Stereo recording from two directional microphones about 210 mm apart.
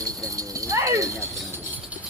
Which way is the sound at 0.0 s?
15° right (ahead or behind).